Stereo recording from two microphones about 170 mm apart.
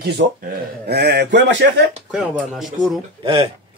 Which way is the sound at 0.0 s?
70° right (ahead or behind).